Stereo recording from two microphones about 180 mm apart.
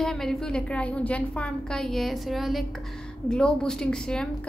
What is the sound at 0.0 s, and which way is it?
A woman's voice, centre (ahead or behind).